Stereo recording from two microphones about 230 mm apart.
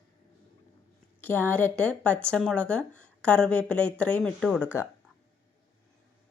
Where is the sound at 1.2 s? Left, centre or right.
Centre.